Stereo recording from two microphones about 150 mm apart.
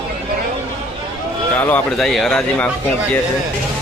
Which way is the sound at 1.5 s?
15° left (ahead or behind).